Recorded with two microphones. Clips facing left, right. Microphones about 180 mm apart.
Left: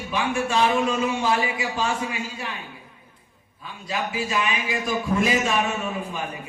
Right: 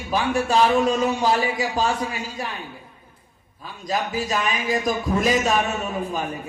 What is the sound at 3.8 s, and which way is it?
Speech, 40° right (ahead or behind).